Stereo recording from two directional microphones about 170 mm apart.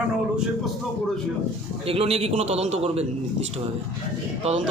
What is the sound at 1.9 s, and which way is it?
A man's voice, 35° right (ahead or behind).